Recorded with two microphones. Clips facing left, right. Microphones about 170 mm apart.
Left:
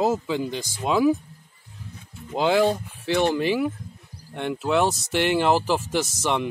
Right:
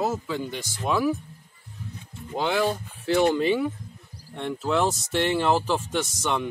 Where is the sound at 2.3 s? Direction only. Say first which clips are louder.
Left 4 dB; 20° left (ahead or behind).